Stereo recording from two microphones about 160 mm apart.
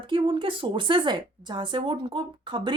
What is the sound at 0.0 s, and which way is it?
A woman's voice, 30° right (ahead or behind).